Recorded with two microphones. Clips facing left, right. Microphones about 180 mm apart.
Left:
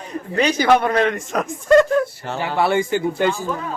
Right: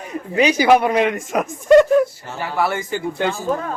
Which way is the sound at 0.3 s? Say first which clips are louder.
Right 2 dB; 10° right (ahead or behind).